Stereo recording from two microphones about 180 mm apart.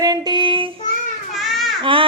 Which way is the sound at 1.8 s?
30° right (ahead or behind).